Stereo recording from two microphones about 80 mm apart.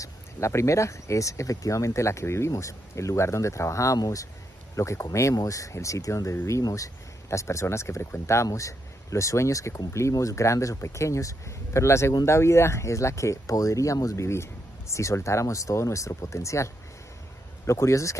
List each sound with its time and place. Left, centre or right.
0.0 s speech: left